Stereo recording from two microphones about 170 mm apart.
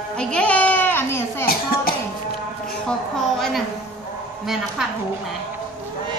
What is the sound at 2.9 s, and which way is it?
Speech, centre (ahead or behind).